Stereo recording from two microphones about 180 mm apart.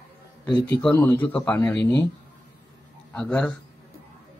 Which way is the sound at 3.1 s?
5° left (ahead or behind).